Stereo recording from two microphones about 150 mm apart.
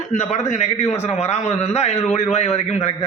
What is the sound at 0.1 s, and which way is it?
A man's voice, 50° left (ahead or behind).